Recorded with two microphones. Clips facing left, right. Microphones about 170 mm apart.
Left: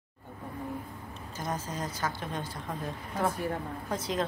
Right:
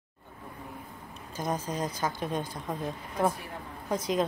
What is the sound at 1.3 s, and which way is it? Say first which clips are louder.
A woman's voice: right 4 dB; 20° right (ahead or behind).